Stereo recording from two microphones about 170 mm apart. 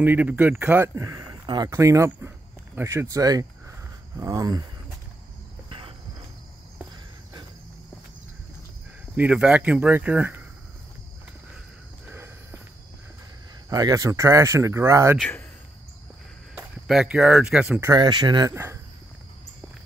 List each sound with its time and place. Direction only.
0.0 s speech: 10° right (ahead or behind)
5.7 s cricket: 30° right (ahead or behind)
9.1 s speech: 10° right (ahead or behind)
12.1 s walk: 10° right (ahead or behind)
13.7 s speech: 20° right (ahead or behind)
15.1 s speech: 5° left (ahead or behind)
16.5 s speech: 5° right (ahead or behind)